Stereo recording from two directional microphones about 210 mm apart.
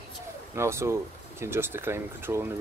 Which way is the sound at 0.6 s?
10° right (ahead or behind).